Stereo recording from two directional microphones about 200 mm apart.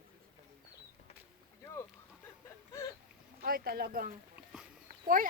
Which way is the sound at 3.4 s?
50° right (ahead or behind).